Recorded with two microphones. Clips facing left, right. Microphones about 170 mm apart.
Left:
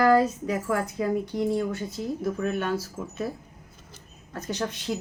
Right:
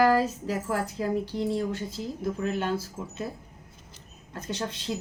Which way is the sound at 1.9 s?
25° right (ahead or behind).